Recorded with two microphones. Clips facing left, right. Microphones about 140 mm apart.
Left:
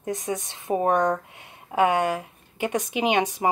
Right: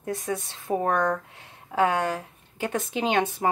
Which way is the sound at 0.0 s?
20° left (ahead or behind).